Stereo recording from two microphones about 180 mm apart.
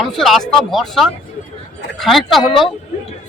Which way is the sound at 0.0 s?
Centre (ahead or behind).